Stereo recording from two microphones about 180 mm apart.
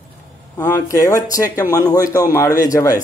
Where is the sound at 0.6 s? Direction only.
15° left (ahead or behind).